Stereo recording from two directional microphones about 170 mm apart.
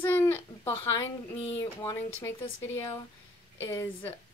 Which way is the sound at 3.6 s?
15° left (ahead or behind).